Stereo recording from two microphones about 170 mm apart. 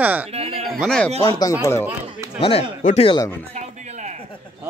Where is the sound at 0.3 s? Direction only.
35° right (ahead or behind).